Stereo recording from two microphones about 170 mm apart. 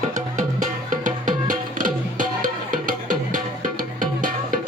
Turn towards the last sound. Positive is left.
turn(degrees=-50)  # may be behind; listen again after turning